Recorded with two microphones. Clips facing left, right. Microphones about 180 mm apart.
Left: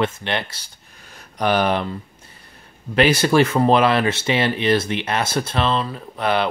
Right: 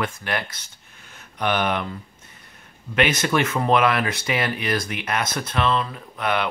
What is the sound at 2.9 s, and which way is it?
Speech, 30° left (ahead or behind).